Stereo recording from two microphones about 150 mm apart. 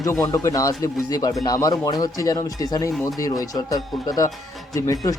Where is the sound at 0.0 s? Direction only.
20° left (ahead or behind).